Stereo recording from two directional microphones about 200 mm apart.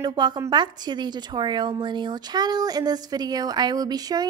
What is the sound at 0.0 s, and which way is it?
Speech, 20° right (ahead or behind).